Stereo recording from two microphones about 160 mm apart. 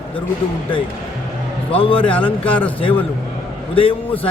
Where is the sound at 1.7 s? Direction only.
35° left (ahead or behind).